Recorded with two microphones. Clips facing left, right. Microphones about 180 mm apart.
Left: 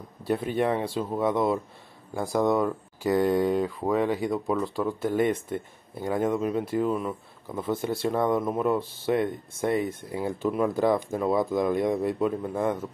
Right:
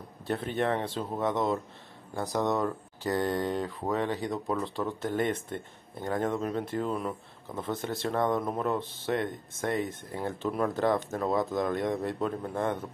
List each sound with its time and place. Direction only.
0.3 s speech: 10° left (ahead or behind)
2.3 s speech: 10° left (ahead or behind)
11.6 s speech: 20° left (ahead or behind)